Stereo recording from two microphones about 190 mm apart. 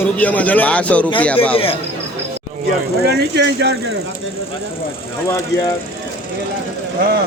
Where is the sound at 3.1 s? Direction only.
60° right (ahead or behind).